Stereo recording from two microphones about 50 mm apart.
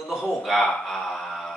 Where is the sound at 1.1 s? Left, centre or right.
Centre.